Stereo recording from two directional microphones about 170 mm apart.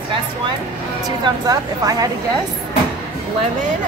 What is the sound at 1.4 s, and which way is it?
Speech, 20° right (ahead or behind).